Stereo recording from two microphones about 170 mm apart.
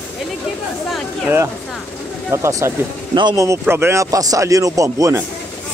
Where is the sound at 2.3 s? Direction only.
15° right (ahead or behind).